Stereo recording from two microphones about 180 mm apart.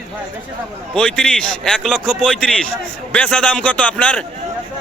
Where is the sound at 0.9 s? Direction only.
5° left (ahead or behind).